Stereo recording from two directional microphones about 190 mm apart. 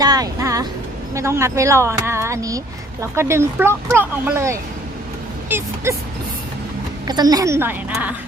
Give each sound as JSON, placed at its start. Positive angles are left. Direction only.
{"t": 0.0, "sound": "vehicle", "side_deg": -20}
{"t": 1.1, "sound": "speech", "side_deg": -15}
{"t": 7.1, "sound": "speech", "side_deg": -20}